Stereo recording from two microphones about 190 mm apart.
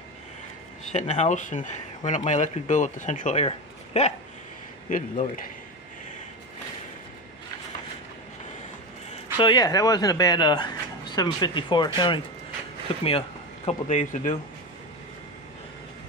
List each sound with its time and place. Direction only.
0.9 s a man's voice: 35° left (ahead or behind)
9.4 s a man's voice: 25° left (ahead or behind); by 14.3 s 40° left (ahead or behind)